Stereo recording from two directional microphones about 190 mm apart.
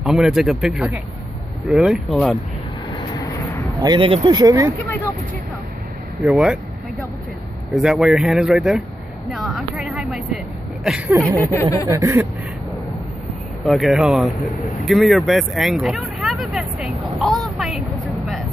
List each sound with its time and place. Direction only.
0.0 s speech: centre (ahead or behind)
3.2 s vehicle: 15° left (ahead or behind)
3.8 s speech: 25° right (ahead or behind)
6.2 s speech: 5° right (ahead or behind)
7.7 s speech: 5° right (ahead or behind)
11.3 s speech: 10° left (ahead or behind)
11.9 s speech: 10° right (ahead or behind)
13.7 s speech: centre (ahead or behind)